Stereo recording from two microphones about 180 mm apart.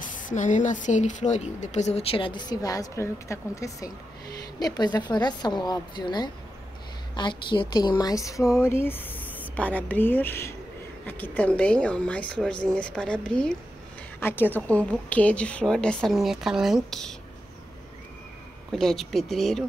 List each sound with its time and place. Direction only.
0.0 s a woman's voice: 45° left (ahead or behind); by 17.1 s centre (ahead or behind)
18.7 s a woman's voice: centre (ahead or behind)